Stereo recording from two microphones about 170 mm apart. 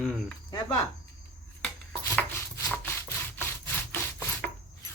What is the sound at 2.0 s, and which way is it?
Wood, 15° left (ahead or behind).